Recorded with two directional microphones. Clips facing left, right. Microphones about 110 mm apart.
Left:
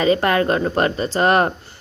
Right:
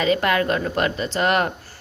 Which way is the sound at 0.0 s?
35° left (ahead or behind).